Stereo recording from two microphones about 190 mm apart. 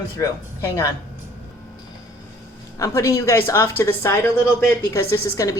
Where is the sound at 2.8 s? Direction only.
15° left (ahead or behind).